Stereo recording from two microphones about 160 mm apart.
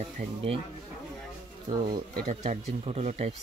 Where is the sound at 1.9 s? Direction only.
65° right (ahead or behind).